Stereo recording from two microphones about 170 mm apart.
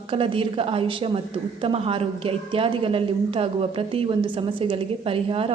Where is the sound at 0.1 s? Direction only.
30° right (ahead or behind).